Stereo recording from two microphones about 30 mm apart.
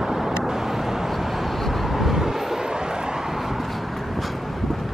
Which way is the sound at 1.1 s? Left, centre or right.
Centre.